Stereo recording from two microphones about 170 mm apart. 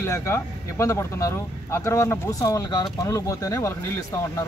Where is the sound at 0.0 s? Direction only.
15° left (ahead or behind).